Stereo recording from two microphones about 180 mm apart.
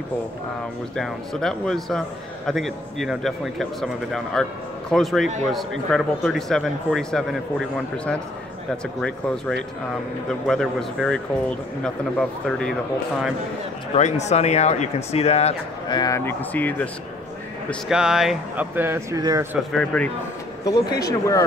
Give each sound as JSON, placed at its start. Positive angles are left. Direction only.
{"t": 0.9, "sound": "a man's voice", "side_deg": 0}
{"t": 10.4, "sound": "a man's voice", "side_deg": 0}
{"t": 13.9, "sound": "speech", "side_deg": 40}
{"t": 16.0, "sound": "speech", "side_deg": 15}
{"t": 17.6, "sound": "speech", "side_deg": -5}
{"t": 19.7, "sound": "a man's voice", "side_deg": 5}
{"t": 20.6, "sound": "speech", "side_deg": 20}